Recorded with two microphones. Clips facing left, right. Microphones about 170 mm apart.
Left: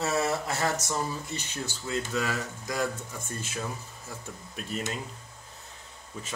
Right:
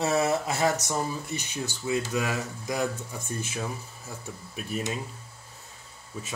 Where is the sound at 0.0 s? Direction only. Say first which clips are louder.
Right 3 dB; 15° right (ahead or behind).